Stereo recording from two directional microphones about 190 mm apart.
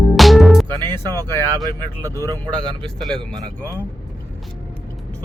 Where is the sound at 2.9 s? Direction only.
Centre (ahead or behind).